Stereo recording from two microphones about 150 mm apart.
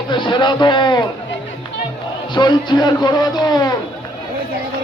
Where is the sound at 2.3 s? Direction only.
30° left (ahead or behind).